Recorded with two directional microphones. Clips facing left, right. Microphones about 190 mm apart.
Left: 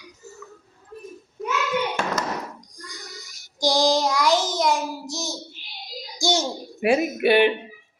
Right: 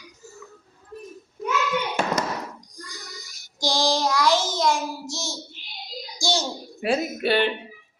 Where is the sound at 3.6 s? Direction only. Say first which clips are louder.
Left 3 dB; 15° left (ahead or behind).